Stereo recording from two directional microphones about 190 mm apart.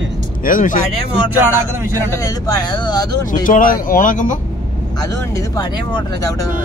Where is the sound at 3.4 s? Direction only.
45° left (ahead or behind).